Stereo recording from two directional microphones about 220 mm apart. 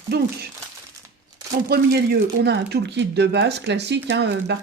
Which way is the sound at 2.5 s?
50° right (ahead or behind).